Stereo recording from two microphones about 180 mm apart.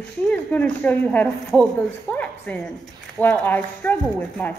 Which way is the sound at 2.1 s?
10° left (ahead or behind).